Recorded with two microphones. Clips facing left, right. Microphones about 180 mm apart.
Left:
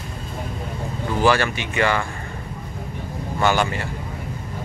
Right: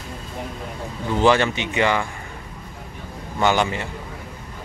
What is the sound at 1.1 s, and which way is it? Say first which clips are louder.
Speech: right 2 dB; 20° right (ahead or behind).